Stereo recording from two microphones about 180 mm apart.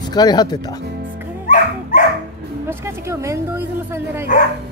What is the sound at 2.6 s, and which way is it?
Speech, 15° right (ahead or behind).